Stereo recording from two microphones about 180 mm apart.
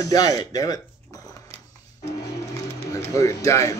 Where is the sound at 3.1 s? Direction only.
15° left (ahead or behind).